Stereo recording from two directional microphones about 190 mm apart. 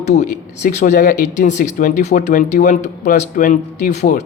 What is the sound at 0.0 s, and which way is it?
A woman's voice, 35° left (ahead or behind).